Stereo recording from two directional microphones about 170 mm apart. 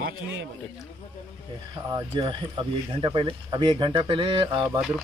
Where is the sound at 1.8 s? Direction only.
20° right (ahead or behind).